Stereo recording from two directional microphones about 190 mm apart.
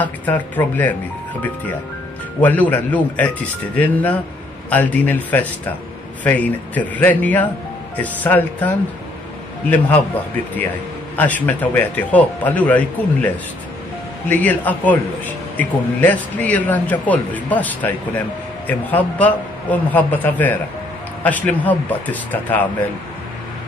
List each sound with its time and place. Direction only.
0.0 s a man's voice: 10° left (ahead or behind)
2.4 s a man's voice: 10° left (ahead or behind)
11.1 s a man's voice: 10° left (ahead or behind)
14.3 s a man's voice: 10° left (ahead or behind)